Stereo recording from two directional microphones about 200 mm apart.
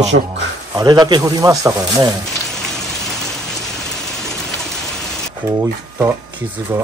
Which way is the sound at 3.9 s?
Centre (ahead or behind).